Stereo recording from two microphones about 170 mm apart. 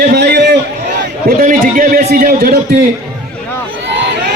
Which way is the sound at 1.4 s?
55° right (ahead or behind).